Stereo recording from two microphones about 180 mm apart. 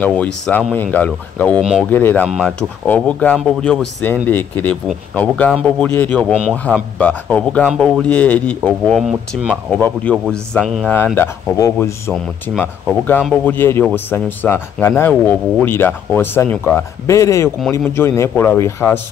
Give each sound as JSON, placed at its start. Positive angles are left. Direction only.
{"t": 0.0, "sound": "speech", "side_deg": 5}
{"t": 1.6, "sound": "speech", "side_deg": -5}
{"t": 1.9, "sound": "speech", "side_deg": 10}
{"t": 7.6, "sound": "speech", "side_deg": -5}
{"t": 9.7, "sound": "speech", "side_deg": 10}
{"t": 11.1, "sound": "speech", "side_deg": 15}
{"t": 13.2, "sound": "speech", "side_deg": 5}